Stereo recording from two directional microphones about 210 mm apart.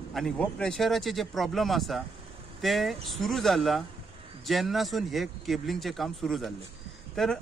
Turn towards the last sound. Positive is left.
turn(degrees=0)  # may be behind; listen again after turning